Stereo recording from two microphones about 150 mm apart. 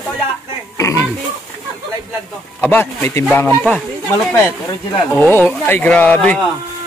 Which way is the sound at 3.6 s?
5° left (ahead or behind).